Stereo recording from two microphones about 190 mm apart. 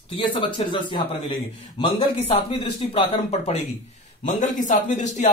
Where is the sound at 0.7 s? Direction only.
25° left (ahead or behind).